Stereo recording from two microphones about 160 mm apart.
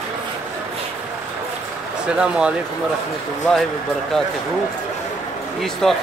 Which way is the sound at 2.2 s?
5° right (ahead or behind).